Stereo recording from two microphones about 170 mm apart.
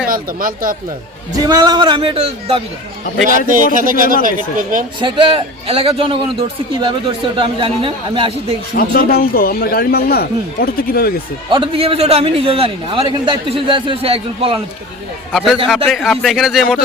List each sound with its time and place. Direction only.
0.1 s speech: 55° right (ahead or behind)
1.5 s a man's voice: 25° right (ahead or behind)
3.2 s speech: 50° right (ahead or behind)
4.9 s a man's voice: 30° right (ahead or behind)
7.3 s a man's voice: 30° right (ahead or behind)
8.7 s speech: 65° left (ahead or behind)
11.5 s a man's voice: 30° right (ahead or behind)
15.3 s speech: centre (ahead or behind)